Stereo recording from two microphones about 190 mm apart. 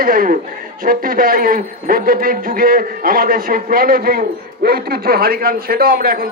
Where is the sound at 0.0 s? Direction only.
50° right (ahead or behind).